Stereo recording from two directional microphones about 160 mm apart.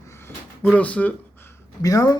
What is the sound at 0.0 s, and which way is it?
Speech, 15° left (ahead or behind).